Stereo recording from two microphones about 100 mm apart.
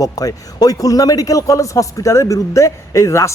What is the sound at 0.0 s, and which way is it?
A man's voice, 35° left (ahead or behind).